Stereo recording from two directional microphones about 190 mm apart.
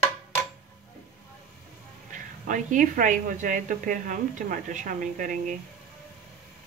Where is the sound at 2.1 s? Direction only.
40° right (ahead or behind).